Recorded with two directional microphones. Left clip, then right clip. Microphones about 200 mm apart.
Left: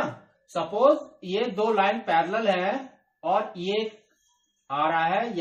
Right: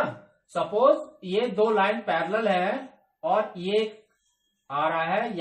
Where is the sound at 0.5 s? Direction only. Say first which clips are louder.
Even; centre (ahead or behind).